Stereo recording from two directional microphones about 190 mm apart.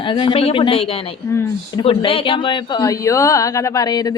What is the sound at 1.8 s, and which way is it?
Speech, 30° left (ahead or behind).